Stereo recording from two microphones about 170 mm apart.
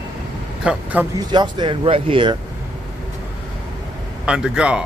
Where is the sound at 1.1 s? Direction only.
25° right (ahead or behind).